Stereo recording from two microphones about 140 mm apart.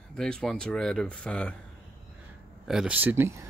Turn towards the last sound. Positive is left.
turn(degrees=-15)  # may be behind; listen again after turning